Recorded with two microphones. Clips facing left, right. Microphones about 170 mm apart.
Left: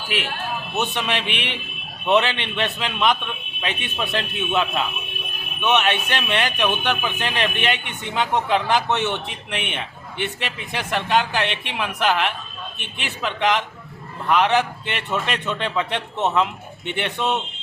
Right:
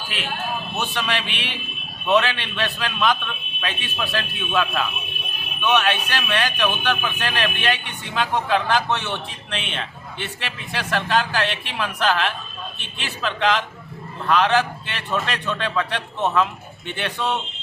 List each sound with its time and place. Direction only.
0.8 s a man's voice: 20° left (ahead or behind)